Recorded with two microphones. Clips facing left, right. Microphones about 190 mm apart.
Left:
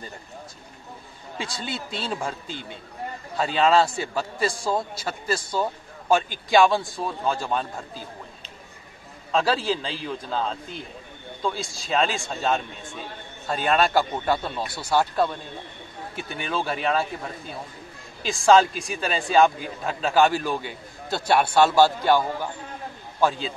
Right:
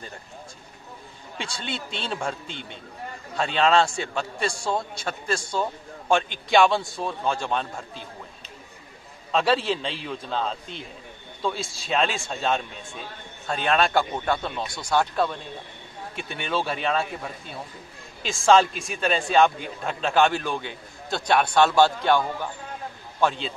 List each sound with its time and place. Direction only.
1.4 s a man's voice: centre (ahead or behind)
9.3 s a man's voice: centre (ahead or behind)